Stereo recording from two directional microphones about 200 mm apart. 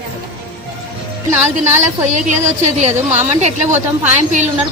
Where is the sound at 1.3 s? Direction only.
10° right (ahead or behind).